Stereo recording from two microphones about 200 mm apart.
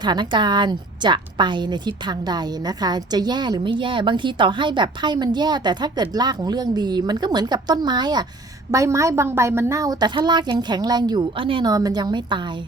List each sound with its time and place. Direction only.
0.0 s a woman's voice: 20° right (ahead or behind)